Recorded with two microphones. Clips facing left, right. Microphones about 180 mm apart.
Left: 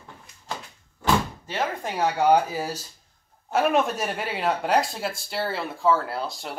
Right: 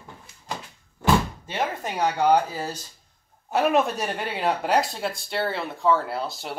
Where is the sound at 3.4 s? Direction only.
Centre (ahead or behind).